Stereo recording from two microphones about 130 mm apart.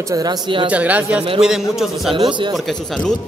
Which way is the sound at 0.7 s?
10° right (ahead or behind).